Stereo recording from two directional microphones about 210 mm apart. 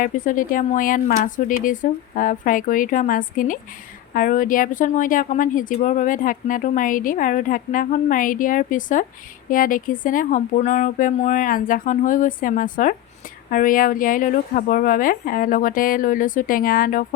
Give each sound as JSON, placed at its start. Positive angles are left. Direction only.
{"t": 0.0, "sound": "a woman's voice", "side_deg": 40}